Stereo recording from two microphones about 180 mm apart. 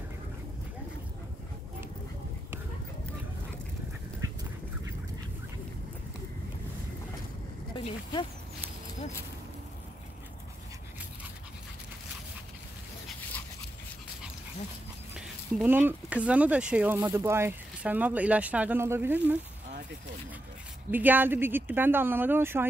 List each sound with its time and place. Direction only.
7.7 s speech: 25° left (ahead or behind)
15.1 s speech: 10° right (ahead or behind)
20.9 s speech: 10° right (ahead or behind)